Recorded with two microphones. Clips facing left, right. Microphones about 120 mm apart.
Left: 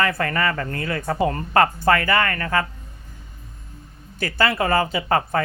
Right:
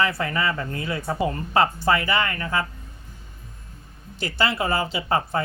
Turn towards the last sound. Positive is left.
turn(degrees=55)  # may be behind; listen again after turning